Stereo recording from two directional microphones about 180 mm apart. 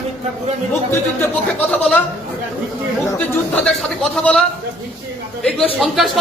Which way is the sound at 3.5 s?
5° left (ahead or behind).